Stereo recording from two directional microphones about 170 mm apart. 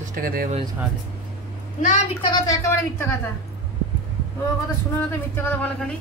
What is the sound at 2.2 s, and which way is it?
Speech, 25° left (ahead or behind).